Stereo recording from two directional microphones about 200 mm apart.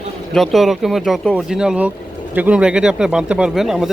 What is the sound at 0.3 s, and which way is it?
Speech, centre (ahead or behind).